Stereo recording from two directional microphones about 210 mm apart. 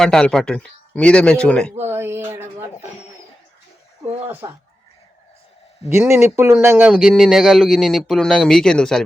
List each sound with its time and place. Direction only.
0.0 s speech: 5° left (ahead or behind)
1.9 s speech: 10° right (ahead or behind)
4.3 s speech: 10° right (ahead or behind)
5.9 s speech: 10° right (ahead or behind)